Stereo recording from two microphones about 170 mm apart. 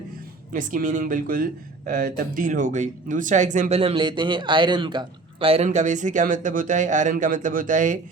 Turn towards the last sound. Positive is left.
turn(degrees=-50)  # may be behind; listen again after turning